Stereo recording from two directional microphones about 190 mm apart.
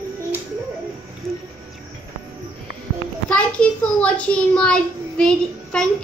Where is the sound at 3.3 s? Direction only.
5° left (ahead or behind).